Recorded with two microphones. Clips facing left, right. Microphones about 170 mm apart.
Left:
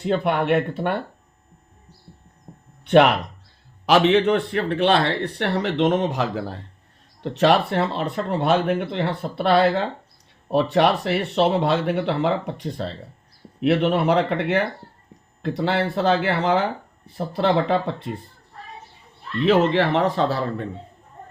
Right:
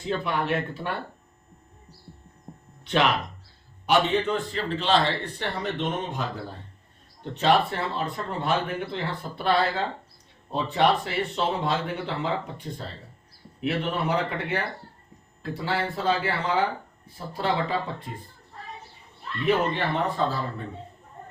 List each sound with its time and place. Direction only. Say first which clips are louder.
0.0 s speech: left 6 dB; 60° left (ahead or behind)
2.8 s speech: left 9 dB; 60° left (ahead or behind)
3.8 s speech: left 6 dB; 90° left; by 18.2 s 75° left (ahead or behind)
19.5 s speech: left 6 dB; 90° left